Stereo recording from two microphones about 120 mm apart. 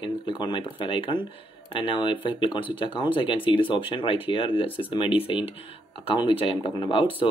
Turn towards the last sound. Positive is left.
turn(degrees=45)  # may be behind; listen again after turning